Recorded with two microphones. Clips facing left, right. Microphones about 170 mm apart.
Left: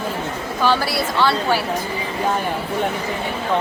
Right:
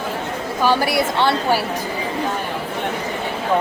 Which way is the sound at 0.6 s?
15° right (ahead or behind).